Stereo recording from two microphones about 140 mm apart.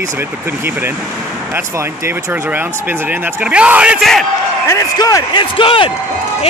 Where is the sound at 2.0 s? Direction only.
15° right (ahead or behind).